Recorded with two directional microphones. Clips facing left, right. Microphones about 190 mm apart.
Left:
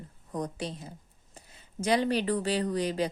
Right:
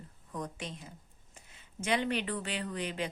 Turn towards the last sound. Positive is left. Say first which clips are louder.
# left 8 dB
turn(degrees=35)  # may be behind; listen again after turning